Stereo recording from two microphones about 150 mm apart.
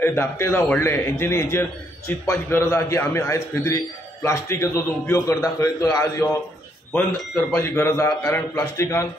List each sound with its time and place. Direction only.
0.0 s a man's voice: 15° left (ahead or behind)